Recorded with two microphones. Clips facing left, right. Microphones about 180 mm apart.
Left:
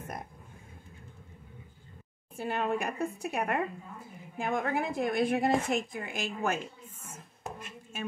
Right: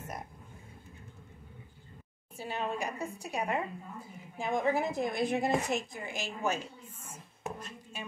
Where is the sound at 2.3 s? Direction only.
55° left (ahead or behind).